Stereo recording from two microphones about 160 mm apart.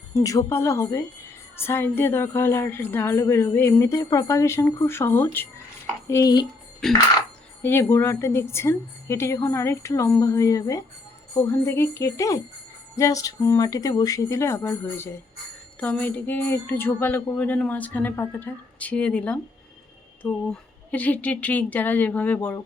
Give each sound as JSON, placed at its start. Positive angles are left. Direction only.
{"t": 0.1, "sound": "a woman's voice", "side_deg": 20}
{"t": 7.6, "sound": "a woman's voice", "side_deg": 15}
{"t": 20.5, "sound": "a woman's voice", "side_deg": 10}